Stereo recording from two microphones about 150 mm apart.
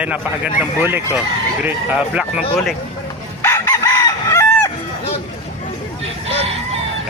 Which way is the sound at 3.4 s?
20° left (ahead or behind).